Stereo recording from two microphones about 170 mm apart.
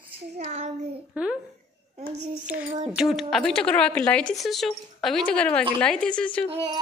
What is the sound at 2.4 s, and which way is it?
Child singing, 10° right (ahead or behind).